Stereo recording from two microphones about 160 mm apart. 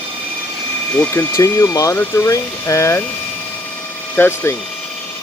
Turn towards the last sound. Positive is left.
turn(degrees=15)  # may be behind; listen again after turning